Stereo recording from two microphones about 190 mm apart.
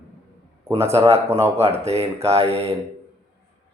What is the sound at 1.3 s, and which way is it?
Speech, 10° right (ahead or behind).